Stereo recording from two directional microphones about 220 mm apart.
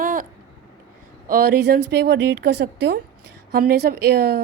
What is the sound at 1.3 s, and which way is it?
A woman's voice, 45° right (ahead or behind).